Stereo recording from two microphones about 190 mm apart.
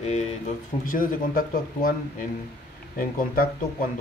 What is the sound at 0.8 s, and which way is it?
Speech, 50° left (ahead or behind).